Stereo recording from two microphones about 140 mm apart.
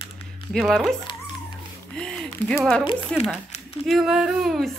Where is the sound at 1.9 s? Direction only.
5° left (ahead or behind).